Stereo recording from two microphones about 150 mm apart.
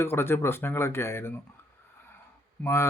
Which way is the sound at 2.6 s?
15° left (ahead or behind).